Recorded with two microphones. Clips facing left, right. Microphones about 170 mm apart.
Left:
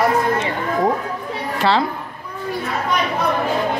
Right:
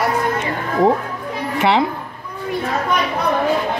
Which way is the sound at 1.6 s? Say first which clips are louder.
Right 2 dB; 20° right (ahead or behind).